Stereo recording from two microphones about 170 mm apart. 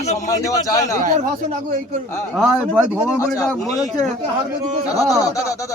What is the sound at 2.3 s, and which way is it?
Speech, 5° left (ahead or behind).